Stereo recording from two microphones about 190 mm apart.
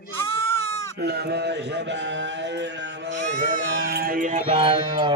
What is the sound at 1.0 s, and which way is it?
Speech, 60° right (ahead or behind).